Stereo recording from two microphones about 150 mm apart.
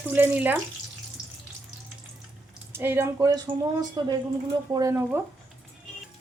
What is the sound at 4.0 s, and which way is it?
Speech, 25° right (ahead or behind).